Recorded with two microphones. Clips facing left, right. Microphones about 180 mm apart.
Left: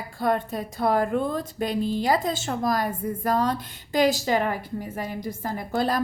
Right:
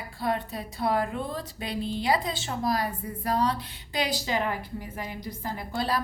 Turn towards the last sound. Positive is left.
turn(degrees=45)  # may be behind; listen again after turning